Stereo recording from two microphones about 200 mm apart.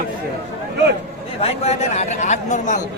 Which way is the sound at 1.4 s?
30° left (ahead or behind).